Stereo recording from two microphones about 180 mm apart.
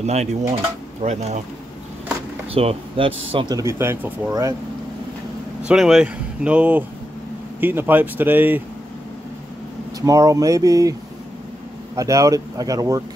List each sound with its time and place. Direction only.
0.0 s speech: 35° right (ahead or behind)
2.5 s speech: 35° right (ahead or behind)
5.6 s speech: 5° right (ahead or behind)
9.9 s speech: 20° right (ahead or behind)